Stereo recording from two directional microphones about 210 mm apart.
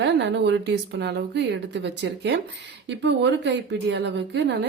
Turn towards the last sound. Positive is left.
turn(degrees=-55)  # may be behind; listen again after turning